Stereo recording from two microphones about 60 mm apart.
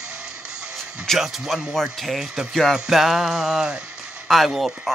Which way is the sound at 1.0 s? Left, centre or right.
Centre.